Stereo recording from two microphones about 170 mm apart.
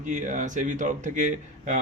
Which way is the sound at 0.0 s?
45° right (ahead or behind).